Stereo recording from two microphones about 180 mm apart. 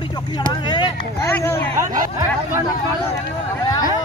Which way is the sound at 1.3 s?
10° left (ahead or behind).